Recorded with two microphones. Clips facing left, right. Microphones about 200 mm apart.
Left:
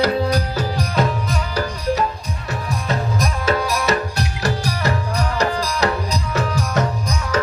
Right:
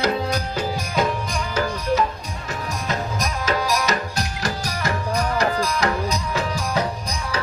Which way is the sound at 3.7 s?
40° right (ahead or behind).